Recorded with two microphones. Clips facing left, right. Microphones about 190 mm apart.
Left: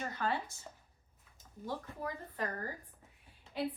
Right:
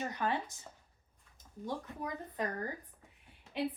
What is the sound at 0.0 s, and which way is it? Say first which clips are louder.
Speech: right 1 dB; 15° right (ahead or behind).